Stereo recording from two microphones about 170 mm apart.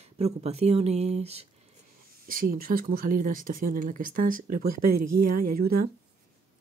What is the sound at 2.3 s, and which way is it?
Speech, 60° right (ahead or behind).